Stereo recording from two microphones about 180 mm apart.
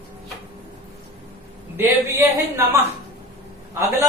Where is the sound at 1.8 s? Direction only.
15° right (ahead or behind).